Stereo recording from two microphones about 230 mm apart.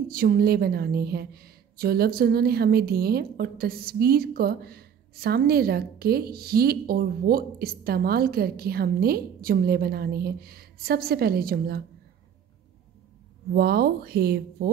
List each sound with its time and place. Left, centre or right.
0.1 s a woman's voice: right
13.6 s speech: right